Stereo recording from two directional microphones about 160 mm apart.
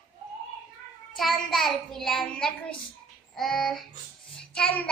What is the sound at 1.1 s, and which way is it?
A child's voice, centre (ahead or behind).